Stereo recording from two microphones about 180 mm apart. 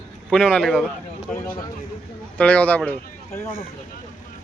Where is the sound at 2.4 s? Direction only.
5° left (ahead or behind).